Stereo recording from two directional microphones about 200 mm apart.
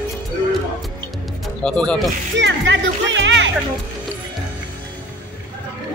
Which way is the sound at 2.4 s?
65° right (ahead or behind).